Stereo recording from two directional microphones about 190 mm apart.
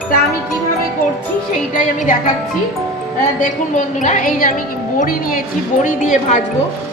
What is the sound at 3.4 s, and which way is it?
A woman's voice, 40° left (ahead or behind).